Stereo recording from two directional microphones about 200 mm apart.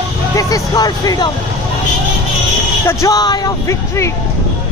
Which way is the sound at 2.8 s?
15° left (ahead or behind).